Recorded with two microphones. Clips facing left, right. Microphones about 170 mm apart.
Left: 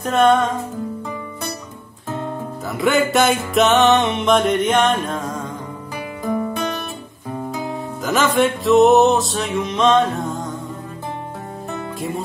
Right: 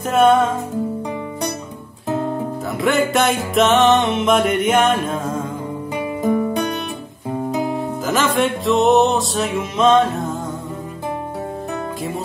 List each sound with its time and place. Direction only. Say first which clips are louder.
0.0 s music: right 1 dB; 5° right (ahead or behind)
2.8 s music: left 1 dB; centre (ahead or behind)
5.9 s music: right 4 dB; 20° right (ahead or behind)
8.0 s music: left 2 dB; centre (ahead or behind)